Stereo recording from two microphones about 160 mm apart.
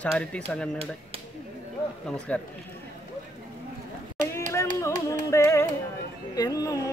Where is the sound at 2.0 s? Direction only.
5° left (ahead or behind).